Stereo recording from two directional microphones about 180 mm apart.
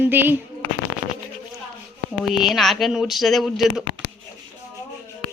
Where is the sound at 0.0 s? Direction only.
10° right (ahead or behind).